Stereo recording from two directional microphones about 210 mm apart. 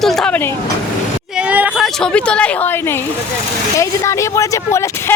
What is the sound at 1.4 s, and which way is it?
Speech, 5° right (ahead or behind).